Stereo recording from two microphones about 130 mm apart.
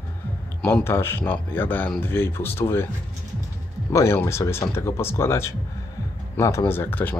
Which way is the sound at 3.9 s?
20° left (ahead or behind).